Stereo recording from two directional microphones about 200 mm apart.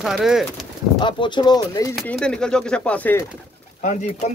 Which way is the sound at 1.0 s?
25° left (ahead or behind).